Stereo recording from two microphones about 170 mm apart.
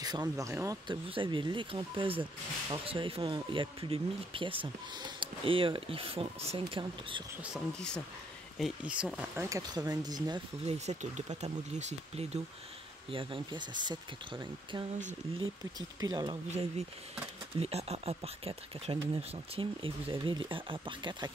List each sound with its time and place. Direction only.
0.2 s speech: 15° right (ahead or behind)
1.1 s speech: 30° right (ahead or behind)
7.5 s speech: 5° left (ahead or behind)
9.5 s speech: 20° right (ahead or behind)
10.6 s speech: 40° right (ahead or behind)
13.1 s speech: 30° right (ahead or behind)
16.0 s speech: 25° right (ahead or behind)
16.4 s speech: 40° right (ahead or behind)